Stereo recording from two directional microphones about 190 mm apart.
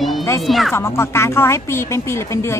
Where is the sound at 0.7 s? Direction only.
15° left (ahead or behind).